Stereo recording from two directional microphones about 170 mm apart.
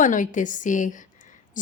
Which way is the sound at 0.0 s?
50° left (ahead or behind).